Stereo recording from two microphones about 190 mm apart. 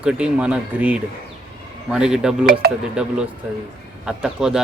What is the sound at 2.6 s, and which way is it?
Speech, 55° right (ahead or behind).